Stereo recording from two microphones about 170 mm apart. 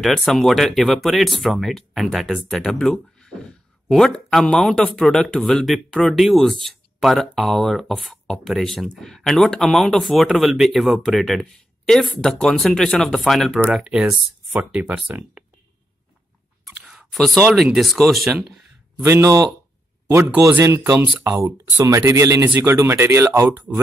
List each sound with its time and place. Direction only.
0.0 s speech: centre (ahead or behind)
16.6 s a sound: centre (ahead or behind)
17.6 s speech: centre (ahead or behind)
19.0 s speech: 15° right (ahead or behind)